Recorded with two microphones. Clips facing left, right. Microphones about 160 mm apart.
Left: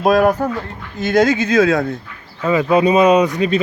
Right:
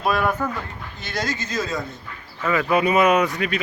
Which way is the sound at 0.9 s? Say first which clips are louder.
Left 14 dB; 50° left (ahead or behind).